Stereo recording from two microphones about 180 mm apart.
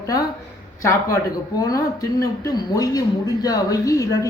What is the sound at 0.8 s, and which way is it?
A man's voice, 15° left (ahead or behind).